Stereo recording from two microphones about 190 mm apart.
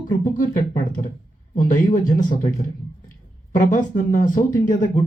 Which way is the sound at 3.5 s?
45° left (ahead or behind).